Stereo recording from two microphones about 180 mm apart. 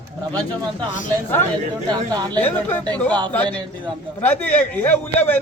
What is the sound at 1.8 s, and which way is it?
Speech, 20° right (ahead or behind).